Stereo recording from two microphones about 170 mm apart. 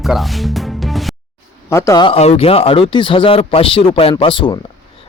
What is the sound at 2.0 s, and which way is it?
Speech, 35° left (ahead or behind).